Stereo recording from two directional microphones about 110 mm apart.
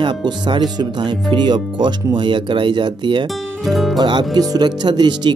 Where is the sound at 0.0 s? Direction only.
45° right (ahead or behind).